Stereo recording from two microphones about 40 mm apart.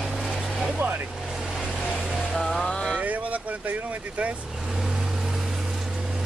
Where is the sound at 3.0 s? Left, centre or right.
Right.